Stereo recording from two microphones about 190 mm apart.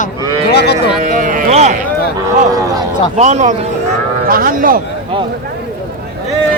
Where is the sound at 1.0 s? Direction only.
40° right (ahead or behind).